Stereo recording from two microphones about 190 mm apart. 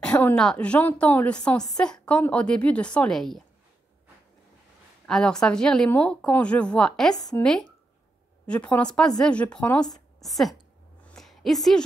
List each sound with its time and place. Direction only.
0.0 s a woman's voice: 5° left (ahead or behind)
5.0 s a woman's voice: 5° left (ahead or behind)
7.2 s speech: 20° left (ahead or behind)
8.5 s a woman's voice: 5° left (ahead or behind)
11.1 s a sound: centre (ahead or behind)